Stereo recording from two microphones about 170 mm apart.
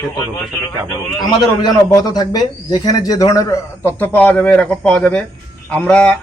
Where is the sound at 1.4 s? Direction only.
20° left (ahead or behind).